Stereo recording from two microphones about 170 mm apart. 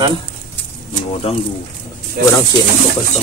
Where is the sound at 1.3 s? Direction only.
35° left (ahead or behind).